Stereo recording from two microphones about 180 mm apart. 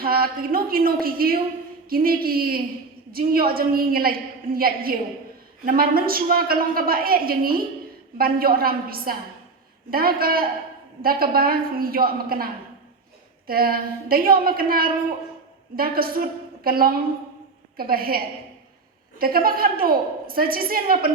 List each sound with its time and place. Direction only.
0.0 s a woman's voice: 55° right (ahead or behind)
13.5 s a woman's voice: 55° right (ahead or behind)
19.2 s a woman's voice: 55° right (ahead or behind)